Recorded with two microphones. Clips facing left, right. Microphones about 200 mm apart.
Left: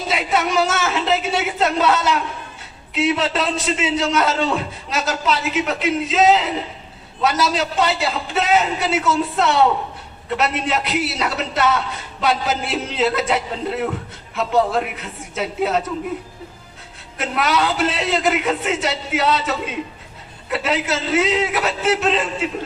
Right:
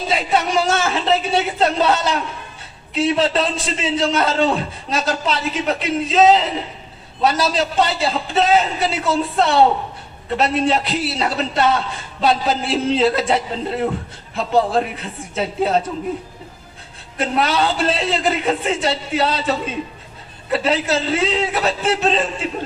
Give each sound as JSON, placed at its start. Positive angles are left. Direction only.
{"t": 0.1, "sound": "a man's voice", "side_deg": -30}
{"t": 17.2, "sound": "a man's voice", "side_deg": -30}